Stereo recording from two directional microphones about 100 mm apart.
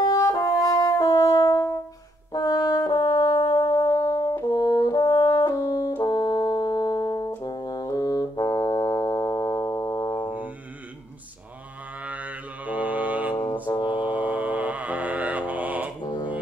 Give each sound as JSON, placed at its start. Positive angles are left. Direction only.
{"t": 0.0, "sound": "french horn", "side_deg": 40}
{"t": 2.3, "sound": "brass instrument", "side_deg": 35}
{"t": 3.0, "sound": "brass instrument", "side_deg": 50}
{"t": 3.5, "sound": "music", "side_deg": 35}
{"t": 4.5, "sound": "brass instrument", "side_deg": 40}
{"t": 5.2, "sound": "french horn", "side_deg": 55}
{"t": 5.5, "sound": "french horn", "side_deg": 35}
{"t": 5.9, "sound": "brass instrument", "side_deg": 45}
{"t": 12.0, "sound": "mantra", "side_deg": -15}
{"t": 16.0, "sound": "a sound", "side_deg": 45}